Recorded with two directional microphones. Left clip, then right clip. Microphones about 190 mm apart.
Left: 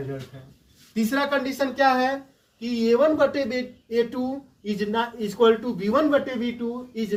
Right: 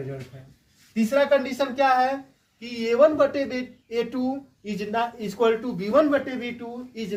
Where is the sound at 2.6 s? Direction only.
15° right (ahead or behind).